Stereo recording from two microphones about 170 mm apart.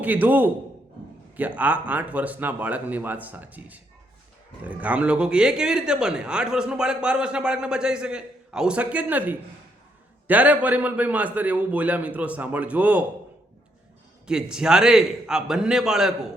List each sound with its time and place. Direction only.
0.0 s a man's voice: 10° right (ahead or behind)
14.3 s speech: 5° right (ahead or behind)